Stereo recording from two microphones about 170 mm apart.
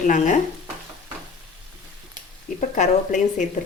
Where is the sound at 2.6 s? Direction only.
45° left (ahead or behind).